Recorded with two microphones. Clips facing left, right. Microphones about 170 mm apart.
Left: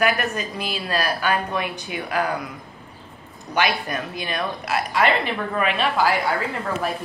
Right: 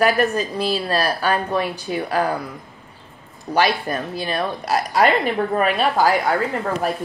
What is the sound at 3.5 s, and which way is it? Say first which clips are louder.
Speech: right 3 dB; 35° right (ahead or behind).